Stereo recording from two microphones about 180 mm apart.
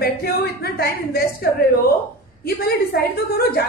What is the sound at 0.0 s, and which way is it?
A woman's voice, 60° left (ahead or behind).